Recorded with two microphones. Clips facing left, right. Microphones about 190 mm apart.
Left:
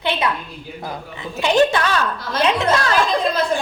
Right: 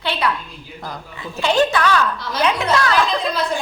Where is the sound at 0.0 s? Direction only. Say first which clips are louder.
Left 1 dB; 20° left (ahead or behind).